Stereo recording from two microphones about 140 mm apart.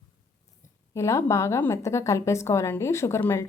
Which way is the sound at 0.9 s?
20° left (ahead or behind).